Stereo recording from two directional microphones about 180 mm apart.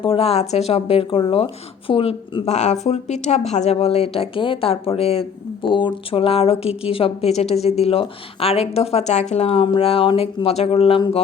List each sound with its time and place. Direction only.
0.0 s speech: 30° left (ahead or behind)